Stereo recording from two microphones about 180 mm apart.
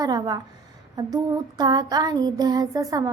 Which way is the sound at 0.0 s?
20° right (ahead or behind).